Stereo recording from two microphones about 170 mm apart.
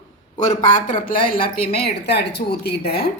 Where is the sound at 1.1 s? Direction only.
55° left (ahead or behind).